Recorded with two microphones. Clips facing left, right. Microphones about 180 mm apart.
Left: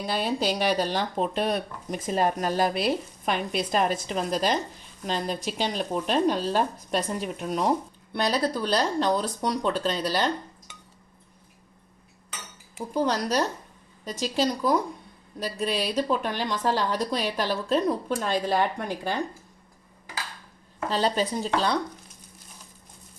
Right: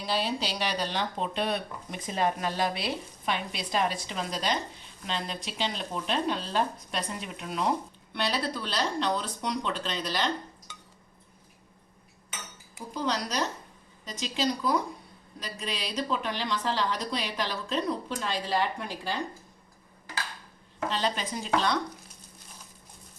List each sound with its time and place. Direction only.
0.0 s speech: 50° left (ahead or behind)
12.9 s speech: 50° left (ahead or behind)
20.9 s speech: 35° left (ahead or behind)